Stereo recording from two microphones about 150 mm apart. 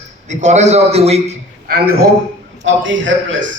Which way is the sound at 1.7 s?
90° right.